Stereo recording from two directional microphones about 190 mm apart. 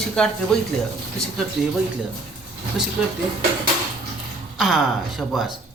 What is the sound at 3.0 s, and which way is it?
Speech, 5° right (ahead or behind).